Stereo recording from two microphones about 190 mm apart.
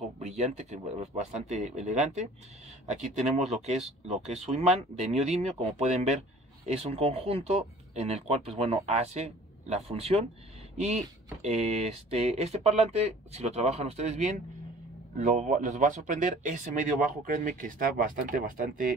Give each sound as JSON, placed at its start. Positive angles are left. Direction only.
{"t": 0.2, "sound": "speech", "side_deg": -35}
{"t": 11.4, "sound": "speech", "side_deg": -35}